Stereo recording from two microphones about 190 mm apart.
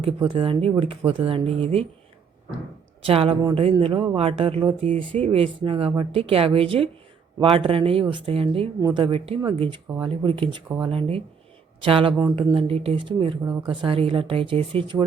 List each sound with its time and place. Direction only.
0.0 s speech: 30° right (ahead or behind)
3.0 s speech: 30° right (ahead or behind)
13.4 s speech: 15° right (ahead or behind)
13.7 s speech: 30° right (ahead or behind)